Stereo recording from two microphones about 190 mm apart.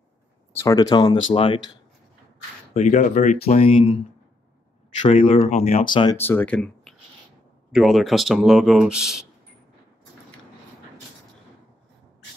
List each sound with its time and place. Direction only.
0.6 s speech: 20° left (ahead or behind)
2.7 s speech: 40° left (ahead or behind)
5.0 s speech: 30° left (ahead or behind)
5.9 s speech: 25° left (ahead or behind)
6.1 s speech: 10° left (ahead or behind)